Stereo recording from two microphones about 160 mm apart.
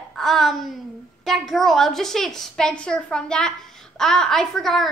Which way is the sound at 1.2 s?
Centre (ahead or behind).